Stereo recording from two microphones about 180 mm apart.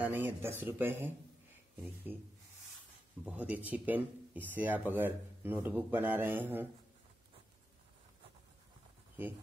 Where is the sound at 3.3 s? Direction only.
10° right (ahead or behind).